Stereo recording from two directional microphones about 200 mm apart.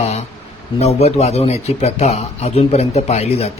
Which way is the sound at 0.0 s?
35° left (ahead or behind).